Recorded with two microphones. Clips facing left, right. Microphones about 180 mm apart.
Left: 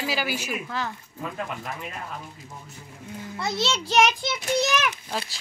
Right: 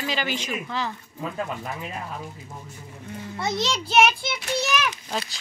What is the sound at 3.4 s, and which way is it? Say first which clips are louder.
Speech: right 1 dB; 15° right (ahead or behind).